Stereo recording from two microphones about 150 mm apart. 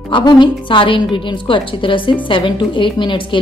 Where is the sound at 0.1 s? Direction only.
30° left (ahead or behind).